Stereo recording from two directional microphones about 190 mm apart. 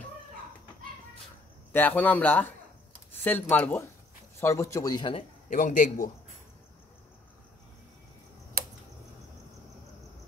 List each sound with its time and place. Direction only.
1.7 s speech: 10° left (ahead or behind)
5.5 s a man's voice: 45° left (ahead or behind)
8.6 s typing: 50° right (ahead or behind)